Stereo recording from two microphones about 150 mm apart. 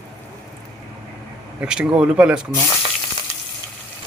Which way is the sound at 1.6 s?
5° right (ahead or behind).